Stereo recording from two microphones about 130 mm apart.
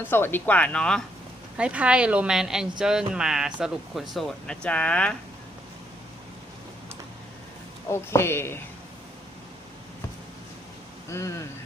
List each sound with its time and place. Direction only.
0.0 s speech: 15° left (ahead or behind)
1.5 s speech: 10° right (ahead or behind); by 5.1 s 10° left (ahead or behind)
7.9 s speech: 20° left (ahead or behind)
11.1 s speech: 25° left (ahead or behind)